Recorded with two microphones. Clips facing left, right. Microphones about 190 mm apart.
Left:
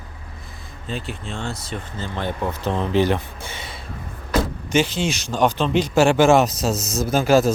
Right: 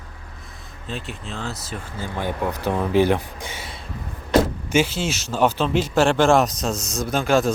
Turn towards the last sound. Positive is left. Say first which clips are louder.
# left 3 dB
turn(degrees=5)  # may be behind; listen again after turning